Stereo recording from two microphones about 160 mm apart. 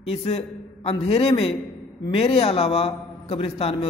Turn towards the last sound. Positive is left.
turn(degrees=35)  # may be behind; listen again after turning